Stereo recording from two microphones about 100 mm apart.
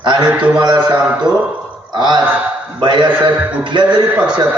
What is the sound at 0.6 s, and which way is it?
Mantra, 50° right (ahead or behind).